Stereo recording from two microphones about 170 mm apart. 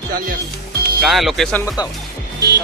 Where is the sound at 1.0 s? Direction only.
Centre (ahead or behind).